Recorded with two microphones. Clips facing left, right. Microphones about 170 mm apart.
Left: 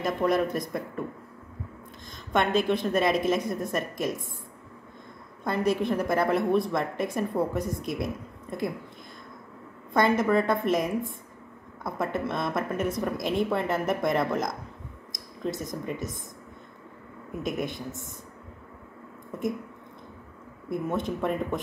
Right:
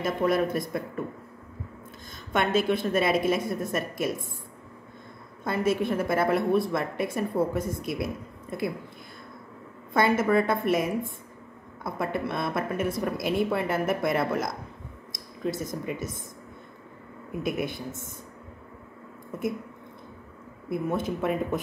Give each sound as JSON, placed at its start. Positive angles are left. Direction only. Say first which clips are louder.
{"t": 0.0, "sound": "speech", "louder": "even", "side_deg": 0}
{"t": 2.3, "sound": "speech", "louder": "even", "side_deg": 0}
{"t": 5.4, "sound": "speech", "louder": "even", "side_deg": -5}
{"t": 9.9, "sound": "speech", "louder": "even", "side_deg": -5}
{"t": 15.6, "sound": "speech", "louder": "right 1 dB", "side_deg": -5}
{"t": 17.4, "sound": "speech", "louder": "right 1 dB", "side_deg": -5}
{"t": 20.7, "sound": "speech", "louder": "right 1 dB", "side_deg": -5}